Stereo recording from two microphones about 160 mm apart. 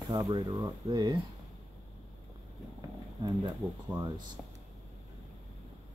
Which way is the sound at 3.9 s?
30° right (ahead or behind).